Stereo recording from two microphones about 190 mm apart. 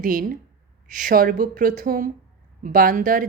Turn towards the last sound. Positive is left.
turn(degrees=-45)  # may be behind; listen again after turning